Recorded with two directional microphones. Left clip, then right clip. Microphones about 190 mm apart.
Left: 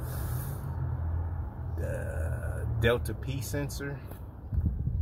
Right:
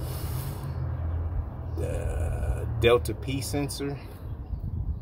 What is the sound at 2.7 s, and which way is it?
Speech, 15° right (ahead or behind).